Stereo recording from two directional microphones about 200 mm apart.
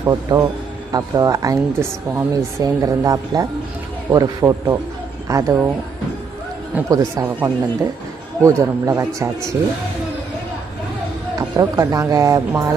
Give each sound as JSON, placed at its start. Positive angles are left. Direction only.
{"t": 0.1, "sound": "speech", "side_deg": -15}
{"t": 6.7, "sound": "speech", "side_deg": -15}
{"t": 11.3, "sound": "speech", "side_deg": -20}